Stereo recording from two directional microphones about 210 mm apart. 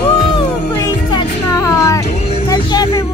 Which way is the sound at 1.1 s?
15° left (ahead or behind).